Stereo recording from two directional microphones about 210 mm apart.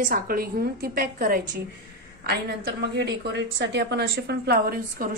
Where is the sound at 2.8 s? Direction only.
55° right (ahead or behind).